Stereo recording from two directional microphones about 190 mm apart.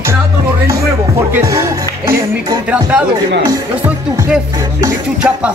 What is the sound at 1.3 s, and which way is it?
Speech, 15° right (ahead or behind).